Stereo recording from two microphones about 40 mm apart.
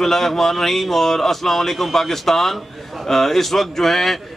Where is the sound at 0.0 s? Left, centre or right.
Centre.